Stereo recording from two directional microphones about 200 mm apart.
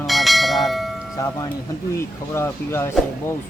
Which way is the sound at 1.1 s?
15° left (ahead or behind).